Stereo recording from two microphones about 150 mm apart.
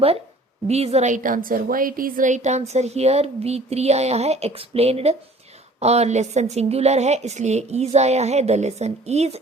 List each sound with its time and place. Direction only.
0.7 s a woman's voice: 45° right (ahead or behind)